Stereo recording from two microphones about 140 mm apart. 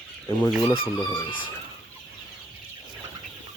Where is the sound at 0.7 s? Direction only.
35° left (ahead or behind).